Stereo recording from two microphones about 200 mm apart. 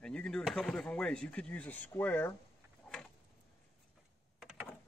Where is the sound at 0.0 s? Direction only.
5° left (ahead or behind).